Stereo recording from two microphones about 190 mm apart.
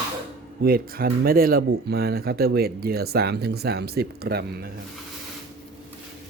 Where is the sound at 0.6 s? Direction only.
50° right (ahead or behind).